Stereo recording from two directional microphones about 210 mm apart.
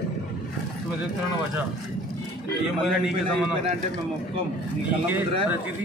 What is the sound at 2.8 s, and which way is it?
Speech, 5° right (ahead or behind).